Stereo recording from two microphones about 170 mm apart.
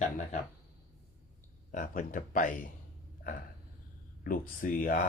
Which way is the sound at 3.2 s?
55° left (ahead or behind).